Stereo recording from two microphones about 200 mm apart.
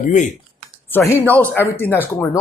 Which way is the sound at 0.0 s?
40° left (ahead or behind).